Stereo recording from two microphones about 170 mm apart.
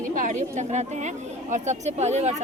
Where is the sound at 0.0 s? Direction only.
50° right (ahead or behind).